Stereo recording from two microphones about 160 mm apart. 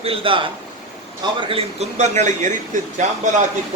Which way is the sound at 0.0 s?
35° right (ahead or behind).